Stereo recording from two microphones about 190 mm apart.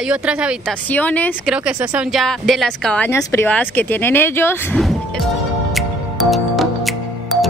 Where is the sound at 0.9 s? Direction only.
10° left (ahead or behind).